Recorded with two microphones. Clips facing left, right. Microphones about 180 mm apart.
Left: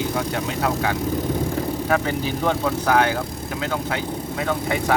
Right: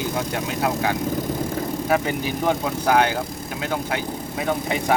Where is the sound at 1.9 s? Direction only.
10° right (ahead or behind).